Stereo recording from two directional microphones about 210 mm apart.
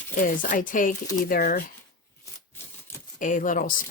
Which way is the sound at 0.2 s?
40° left (ahead or behind).